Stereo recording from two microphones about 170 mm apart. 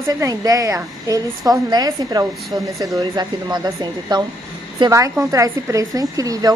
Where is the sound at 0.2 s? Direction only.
20° right (ahead or behind).